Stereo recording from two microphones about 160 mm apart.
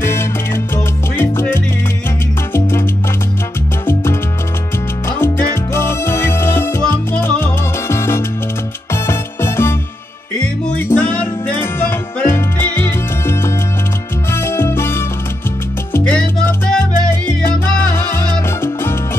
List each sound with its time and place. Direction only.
0.0 s salsa music: 15° left (ahead or behind)
3.8 s music: 15° left (ahead or behind)
6.8 s salsa music: 15° left (ahead or behind)
8.9 s music: 15° left (ahead or behind)
17.6 s salsa music: 15° left (ahead or behind)